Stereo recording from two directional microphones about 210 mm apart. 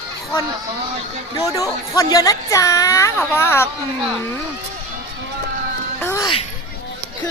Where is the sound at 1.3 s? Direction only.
15° left (ahead or behind).